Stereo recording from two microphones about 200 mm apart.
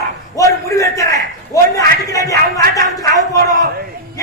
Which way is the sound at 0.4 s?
15° left (ahead or behind).